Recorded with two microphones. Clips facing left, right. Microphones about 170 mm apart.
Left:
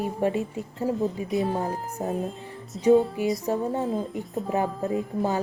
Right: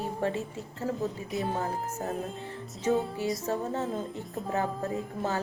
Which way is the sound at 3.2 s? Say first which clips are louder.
Left 5 dB; 15° left (ahead or behind).